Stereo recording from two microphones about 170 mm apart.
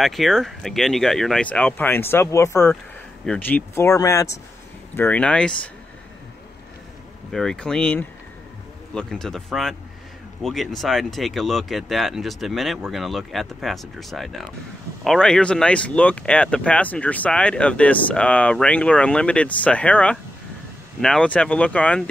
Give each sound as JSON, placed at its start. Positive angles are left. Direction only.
{"t": 0.0, "sound": "speech", "side_deg": 0}
{"t": 7.3, "sound": "speech", "side_deg": 5}